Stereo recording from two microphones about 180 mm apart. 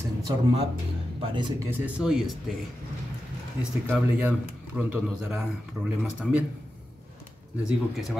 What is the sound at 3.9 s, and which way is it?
A man's voice, 10° right (ahead or behind).